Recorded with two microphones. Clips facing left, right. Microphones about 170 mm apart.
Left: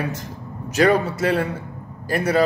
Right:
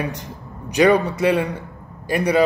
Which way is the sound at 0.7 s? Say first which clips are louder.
Right 2 dB; 15° right (ahead or behind).